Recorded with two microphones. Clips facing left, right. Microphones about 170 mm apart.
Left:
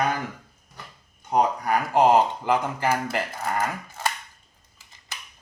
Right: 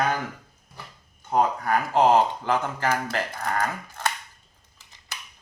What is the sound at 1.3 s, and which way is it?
Speech, 15° left (ahead or behind).